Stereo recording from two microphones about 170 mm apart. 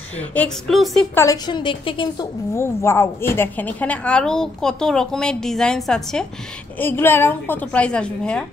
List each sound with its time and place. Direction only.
0.2 s a woman's voice: 10° left (ahead or behind)
1.1 s a woman's voice: 20° left (ahead or behind)
2.5 s a woman's voice: 15° left (ahead or behind)
6.8 s a woman's voice: 15° left (ahead or behind)